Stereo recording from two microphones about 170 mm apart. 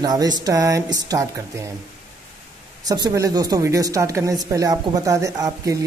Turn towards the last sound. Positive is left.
turn(degrees=-20)  # may be behind; listen again after turning